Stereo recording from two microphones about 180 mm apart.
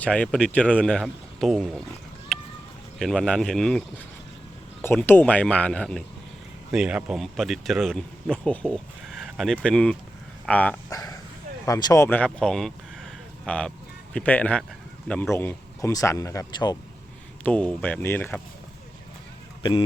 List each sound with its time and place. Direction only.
0.0 s speech: 5° left (ahead or behind)
2.3 s a sound: 5° left (ahead or behind)
3.0 s speech: centre (ahead or behind)
6.7 s speech: 5° right (ahead or behind)
10.8 s speech: 20° left (ahead or behind)
12.0 s a sound: 10° left (ahead or behind)
15.0 s speech: 5° left (ahead or behind)
17.4 s speech: 5° left (ahead or behind)